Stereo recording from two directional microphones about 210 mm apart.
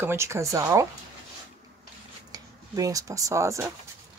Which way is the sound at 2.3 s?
15° right (ahead or behind).